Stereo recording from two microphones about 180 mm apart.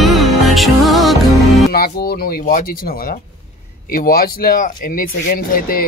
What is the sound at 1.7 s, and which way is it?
Speech, 60° left (ahead or behind).